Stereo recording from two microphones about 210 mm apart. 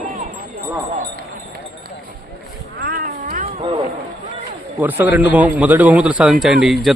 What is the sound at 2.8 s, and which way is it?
Cat, 45° right (ahead or behind).